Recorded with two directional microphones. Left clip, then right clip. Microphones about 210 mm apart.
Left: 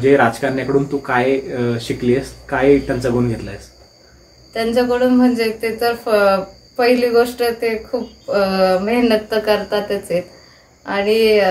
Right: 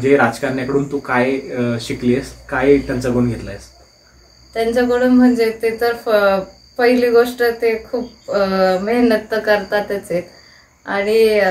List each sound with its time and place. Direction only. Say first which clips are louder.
0.0 s speech: left 1 dB; 25° left (ahead or behind)
4.6 s speech: right 1 dB; 10° right (ahead or behind)